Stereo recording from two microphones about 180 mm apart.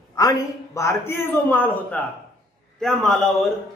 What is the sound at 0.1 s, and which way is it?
A man's voice, 20° left (ahead or behind).